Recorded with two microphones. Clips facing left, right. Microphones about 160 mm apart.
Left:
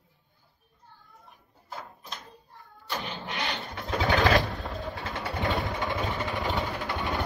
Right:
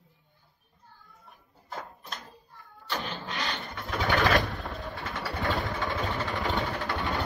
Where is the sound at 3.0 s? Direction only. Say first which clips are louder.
Left 1 dB; 30° left (ahead or behind).